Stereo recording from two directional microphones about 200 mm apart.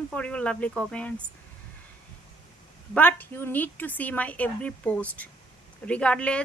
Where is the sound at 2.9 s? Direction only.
10° left (ahead or behind).